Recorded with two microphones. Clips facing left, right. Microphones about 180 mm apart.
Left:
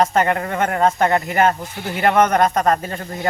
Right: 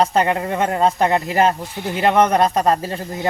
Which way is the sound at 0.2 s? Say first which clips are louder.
Even; 25° right (ahead or behind).